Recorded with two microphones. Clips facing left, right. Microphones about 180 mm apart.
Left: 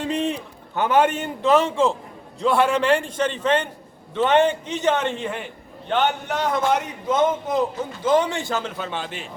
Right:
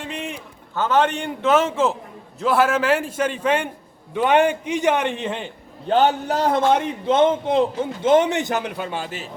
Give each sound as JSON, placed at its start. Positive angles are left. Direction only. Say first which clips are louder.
{"t": 0.1, "sound": "a sound", "louder": "left 8 dB", "side_deg": 35}
{"t": 0.8, "sound": "a man's voice", "louder": "left 1 dB", "side_deg": 10}
{"t": 5.9, "sound": "a man's voice", "louder": "right 4 dB", "side_deg": -35}